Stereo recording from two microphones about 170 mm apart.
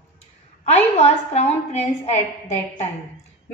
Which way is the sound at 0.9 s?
40° left (ahead or behind).